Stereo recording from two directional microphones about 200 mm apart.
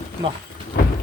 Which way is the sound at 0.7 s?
55° left (ahead or behind).